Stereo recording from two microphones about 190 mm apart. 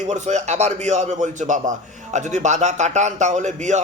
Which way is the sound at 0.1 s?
35° right (ahead or behind).